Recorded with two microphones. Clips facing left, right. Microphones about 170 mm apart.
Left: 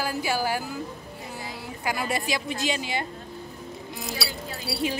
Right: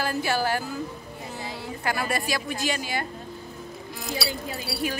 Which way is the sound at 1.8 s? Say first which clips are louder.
Even; 15° left (ahead or behind).